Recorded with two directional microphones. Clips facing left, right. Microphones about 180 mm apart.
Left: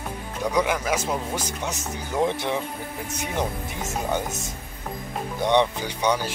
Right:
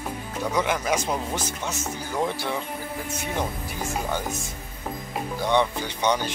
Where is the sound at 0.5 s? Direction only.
10° left (ahead or behind).